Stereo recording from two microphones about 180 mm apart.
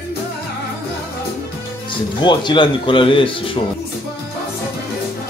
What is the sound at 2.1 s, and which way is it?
Speech, 25° left (ahead or behind).